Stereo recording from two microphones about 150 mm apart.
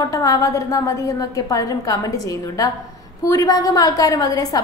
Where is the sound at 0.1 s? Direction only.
25° left (ahead or behind).